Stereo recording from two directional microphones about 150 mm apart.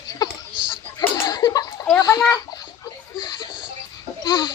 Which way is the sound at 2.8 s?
25° left (ahead or behind).